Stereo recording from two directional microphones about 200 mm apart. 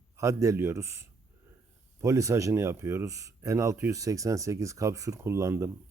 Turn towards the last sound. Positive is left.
turn(degrees=-15)  # may be behind; listen again after turning